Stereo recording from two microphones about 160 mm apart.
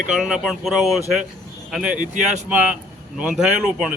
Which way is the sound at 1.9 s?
50° right (ahead or behind).